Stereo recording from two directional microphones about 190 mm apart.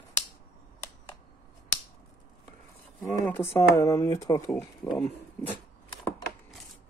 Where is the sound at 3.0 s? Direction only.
10° left (ahead or behind).